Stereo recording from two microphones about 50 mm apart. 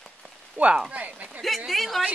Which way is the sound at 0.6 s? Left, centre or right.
Right.